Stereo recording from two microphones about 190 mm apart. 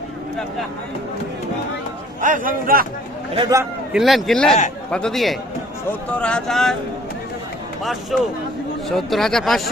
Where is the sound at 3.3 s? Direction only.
20° right (ahead or behind).